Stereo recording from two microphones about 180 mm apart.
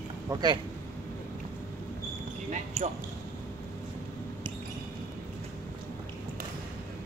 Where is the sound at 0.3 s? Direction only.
20° right (ahead or behind).